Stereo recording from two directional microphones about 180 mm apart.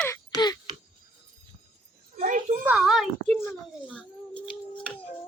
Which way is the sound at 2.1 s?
45° right (ahead or behind).